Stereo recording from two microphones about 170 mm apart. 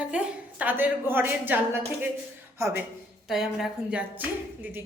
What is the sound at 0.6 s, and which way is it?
Speech, 10° right (ahead or behind).